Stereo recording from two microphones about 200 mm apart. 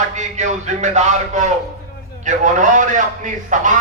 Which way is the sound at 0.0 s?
35° right (ahead or behind).